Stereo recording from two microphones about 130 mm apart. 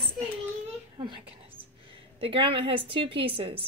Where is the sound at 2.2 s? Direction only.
40° right (ahead or behind).